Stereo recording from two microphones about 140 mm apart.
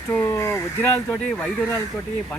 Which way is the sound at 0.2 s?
15° left (ahead or behind).